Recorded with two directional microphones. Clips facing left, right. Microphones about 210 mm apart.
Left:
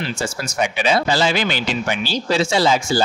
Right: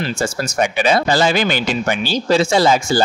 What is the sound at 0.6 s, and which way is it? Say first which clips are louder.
Speech: right 3 dB; 50° right (ahead or behind).